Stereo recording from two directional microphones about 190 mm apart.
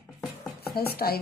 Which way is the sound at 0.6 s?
55° left (ahead or behind).